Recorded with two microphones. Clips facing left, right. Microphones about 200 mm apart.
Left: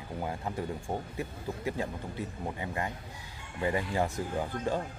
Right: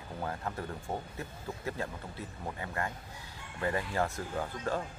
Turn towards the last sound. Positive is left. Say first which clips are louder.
# left 3 dB
turn(degrees=15)  # may be behind; listen again after turning